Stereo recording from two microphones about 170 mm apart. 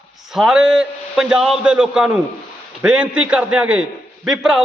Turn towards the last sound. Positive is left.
turn(degrees=-5)  # may be behind; listen again after turning